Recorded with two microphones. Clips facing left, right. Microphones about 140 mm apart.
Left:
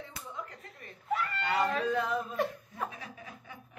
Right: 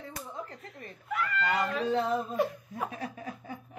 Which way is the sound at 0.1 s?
35° right (ahead or behind).